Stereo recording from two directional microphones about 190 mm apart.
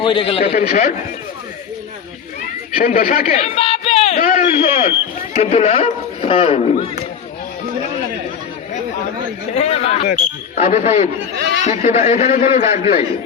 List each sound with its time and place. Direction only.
0.0 s a man's voice: 25° left (ahead or behind)
0.5 s a man's voice: 45° left (ahead or behind)
2.7 s a man's voice: 50° left (ahead or behind)
3.3 s speech: 35° left (ahead or behind)
4.2 s a man's voice: 45° left (ahead or behind)
5.3 s a man's voice: 35° left (ahead or behind)
9.6 s a sound: 35° left (ahead or behind)
10.6 s a man's voice: 40° left (ahead or behind)
11.3 s speech: 60° right (ahead or behind)
11.6 s a man's voice: 35° left (ahead or behind)